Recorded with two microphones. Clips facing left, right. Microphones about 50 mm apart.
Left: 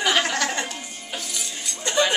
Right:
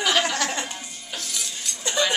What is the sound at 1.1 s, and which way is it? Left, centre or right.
Music, centre.